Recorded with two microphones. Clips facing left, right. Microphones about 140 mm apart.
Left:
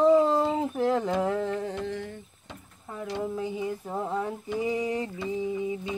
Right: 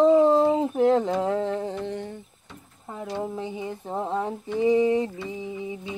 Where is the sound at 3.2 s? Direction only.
25° right (ahead or behind).